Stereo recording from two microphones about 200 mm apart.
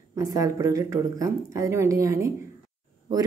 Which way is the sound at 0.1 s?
15° right (ahead or behind).